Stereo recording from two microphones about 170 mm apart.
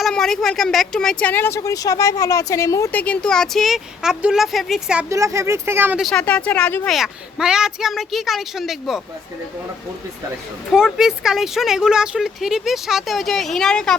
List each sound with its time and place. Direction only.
0.0 s speech: centre (ahead or behind)
5.0 s speech: 15° right (ahead or behind)
6.0 s speech: 5° left (ahead or behind)
6.9 s speech: 5° right (ahead or behind)
10.7 s speech: 5° right (ahead or behind)